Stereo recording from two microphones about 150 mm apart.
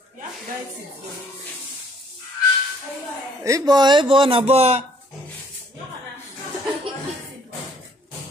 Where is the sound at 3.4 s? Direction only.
25° right (ahead or behind); by 4.9 s 45° right (ahead or behind).